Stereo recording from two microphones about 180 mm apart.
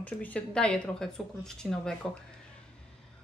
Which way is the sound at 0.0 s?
5° left (ahead or behind).